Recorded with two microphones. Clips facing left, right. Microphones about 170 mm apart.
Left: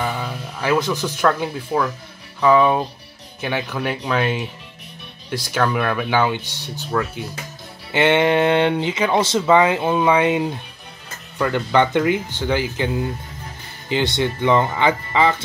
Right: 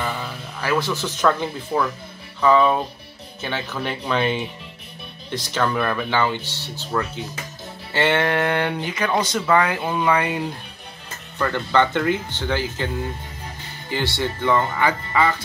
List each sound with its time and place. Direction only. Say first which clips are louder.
0.0 s speech: left 3 dB; 15° left (ahead or behind)
6.9 s speech: left 2 dB; centre (ahead or behind)
7.9 s speech: left 4 dB; 20° left (ahead or behind)